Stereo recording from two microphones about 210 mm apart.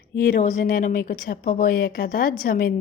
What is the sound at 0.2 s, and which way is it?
A woman's voice, 45° left (ahead or behind).